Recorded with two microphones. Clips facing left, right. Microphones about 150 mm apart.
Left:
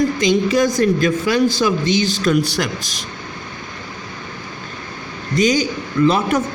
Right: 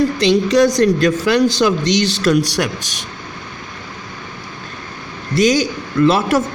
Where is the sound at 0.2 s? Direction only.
75° right (ahead or behind).